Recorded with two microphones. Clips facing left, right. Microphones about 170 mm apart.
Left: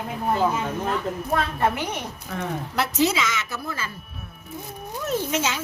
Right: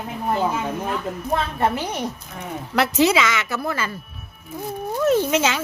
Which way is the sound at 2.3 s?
90° left.